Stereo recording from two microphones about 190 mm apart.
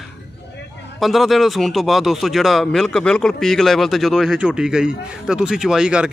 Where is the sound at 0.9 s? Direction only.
Centre (ahead or behind).